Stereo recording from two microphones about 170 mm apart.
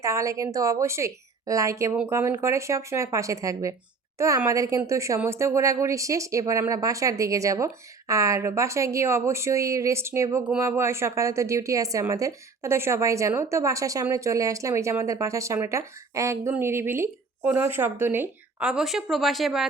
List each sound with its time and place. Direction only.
0.0 s a woman's voice: 20° right (ahead or behind); by 19.6 s centre (ahead or behind)